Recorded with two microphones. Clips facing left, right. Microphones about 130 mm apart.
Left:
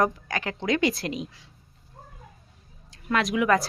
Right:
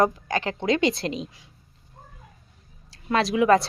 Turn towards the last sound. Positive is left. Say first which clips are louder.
# right 3 dB
turn(degrees=-30)  # may be behind; listen again after turning